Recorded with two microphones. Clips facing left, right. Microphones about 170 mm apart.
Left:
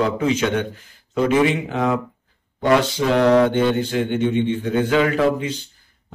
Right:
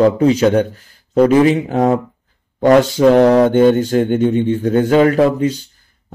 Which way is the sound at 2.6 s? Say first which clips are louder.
Right 7 dB; 45° right (ahead or behind).